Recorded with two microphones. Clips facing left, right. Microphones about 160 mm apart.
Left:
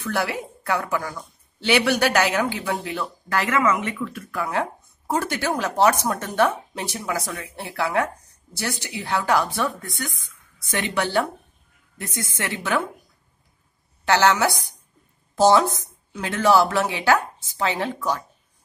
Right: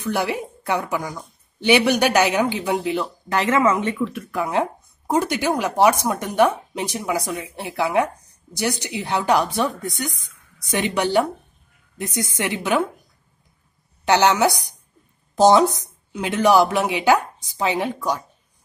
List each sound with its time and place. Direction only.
0.0 s a woman's voice: 20° right (ahead or behind)
4.3 s speech: 20° right (ahead or behind)
14.0 s speech: 20° right (ahead or behind)